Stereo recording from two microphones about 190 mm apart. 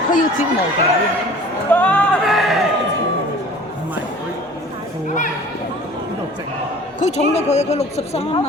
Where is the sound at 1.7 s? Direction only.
10° left (ahead or behind).